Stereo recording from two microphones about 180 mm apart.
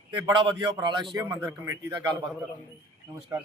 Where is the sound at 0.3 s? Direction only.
25° right (ahead or behind).